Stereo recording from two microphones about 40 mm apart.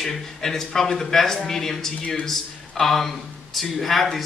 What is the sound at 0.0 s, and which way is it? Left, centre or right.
A man's voice, centre.